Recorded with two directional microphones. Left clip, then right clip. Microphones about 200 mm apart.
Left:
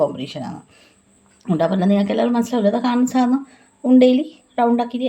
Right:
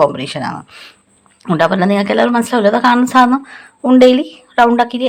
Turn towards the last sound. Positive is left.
turn(degrees=-5)  # may be behind; listen again after turning